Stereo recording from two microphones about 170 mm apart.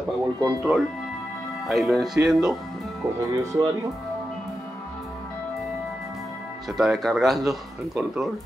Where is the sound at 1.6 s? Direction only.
Centre (ahead or behind).